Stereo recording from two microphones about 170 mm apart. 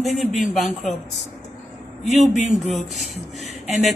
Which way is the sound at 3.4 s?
40° left (ahead or behind).